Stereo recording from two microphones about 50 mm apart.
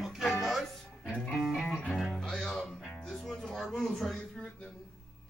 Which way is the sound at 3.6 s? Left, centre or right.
Centre.